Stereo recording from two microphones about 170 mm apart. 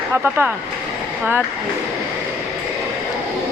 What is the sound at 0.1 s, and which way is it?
Speech, 10° right (ahead or behind).